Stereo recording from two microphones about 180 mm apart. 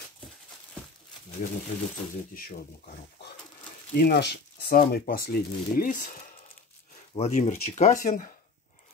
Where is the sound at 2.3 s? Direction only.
55° left (ahead or behind).